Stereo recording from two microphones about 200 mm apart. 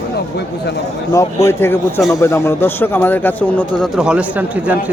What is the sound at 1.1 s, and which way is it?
Speech, 15° left (ahead or behind).